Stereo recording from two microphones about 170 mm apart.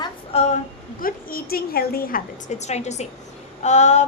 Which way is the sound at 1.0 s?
60° left (ahead or behind).